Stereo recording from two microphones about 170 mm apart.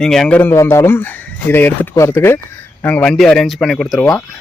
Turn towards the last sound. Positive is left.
turn(degrees=5)  # may be behind; listen again after turning